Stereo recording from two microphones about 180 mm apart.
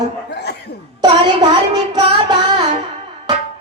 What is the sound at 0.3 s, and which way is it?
Chuckle, 65° left (ahead or behind).